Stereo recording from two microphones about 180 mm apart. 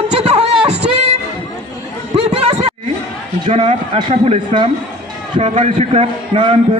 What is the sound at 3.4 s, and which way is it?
A man's voice, 35° right (ahead or behind).